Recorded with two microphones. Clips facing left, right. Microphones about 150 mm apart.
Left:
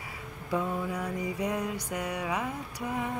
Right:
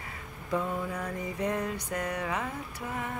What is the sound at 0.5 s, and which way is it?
Mantra, 10° left (ahead or behind).